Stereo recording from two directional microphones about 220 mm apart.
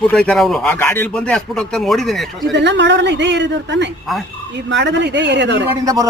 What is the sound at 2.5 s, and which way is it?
A woman's voice, 50° right (ahead or behind).